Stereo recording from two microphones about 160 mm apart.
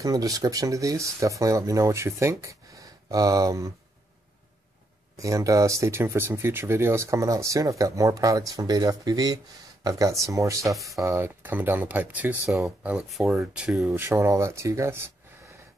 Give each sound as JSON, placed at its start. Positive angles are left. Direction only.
{"t": 0.0, "sound": "speech", "side_deg": -20}
{"t": 5.1, "sound": "speech", "side_deg": -20}
{"t": 10.7, "sound": "speech", "side_deg": 0}
{"t": 11.0, "sound": "speech", "side_deg": -15}
{"t": 13.9, "sound": "speech", "side_deg": -20}